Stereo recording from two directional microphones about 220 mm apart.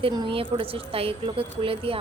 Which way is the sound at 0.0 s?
20° right (ahead or behind).